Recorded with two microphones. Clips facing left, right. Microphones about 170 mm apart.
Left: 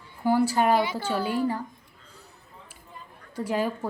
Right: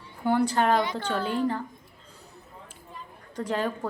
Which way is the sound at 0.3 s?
5° left (ahead or behind).